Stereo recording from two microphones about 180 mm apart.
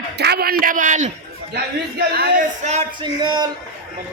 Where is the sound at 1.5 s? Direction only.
60° right (ahead or behind).